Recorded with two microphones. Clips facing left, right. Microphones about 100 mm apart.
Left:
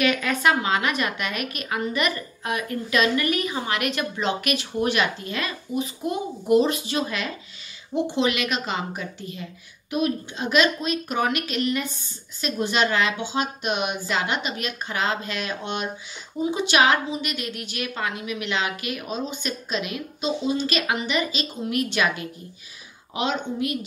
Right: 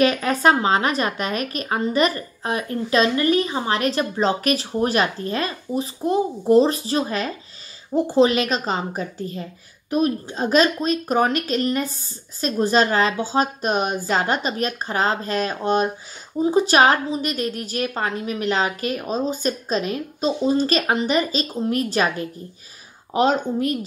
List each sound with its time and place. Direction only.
0.0 s a woman's voice: 35° right (ahead or behind)